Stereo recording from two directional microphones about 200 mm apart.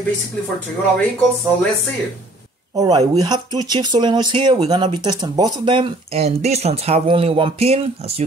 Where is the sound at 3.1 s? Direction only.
20° right (ahead or behind).